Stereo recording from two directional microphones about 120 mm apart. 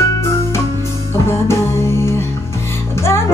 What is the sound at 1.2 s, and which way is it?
Music, 20° left (ahead or behind).